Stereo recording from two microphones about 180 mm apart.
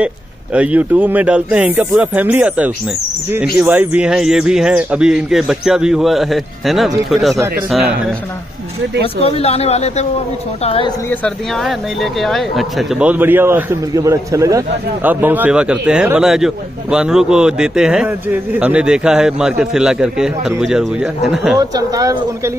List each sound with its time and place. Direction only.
0.0 s a man's voice: 5° right (ahead or behind)
9.0 s speech: 30° left (ahead or behind)
11.1 s a man's voice: 5° left (ahead or behind)
21.5 s speech: 20° right (ahead or behind)